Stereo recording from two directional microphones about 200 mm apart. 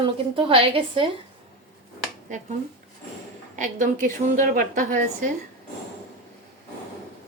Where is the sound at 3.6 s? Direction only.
40° right (ahead or behind).